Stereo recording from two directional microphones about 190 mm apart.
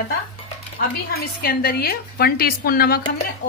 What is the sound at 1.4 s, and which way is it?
A woman's voice, 55° left (ahead or behind).